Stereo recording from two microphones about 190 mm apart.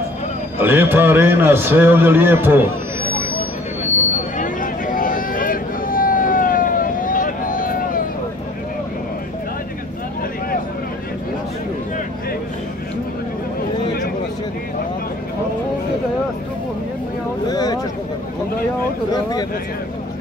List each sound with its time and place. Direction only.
0.6 s a man's voice: 10° right (ahead or behind)
4.4 s vehicle: 45° left (ahead or behind)
17.5 s a sound: 20° left (ahead or behind)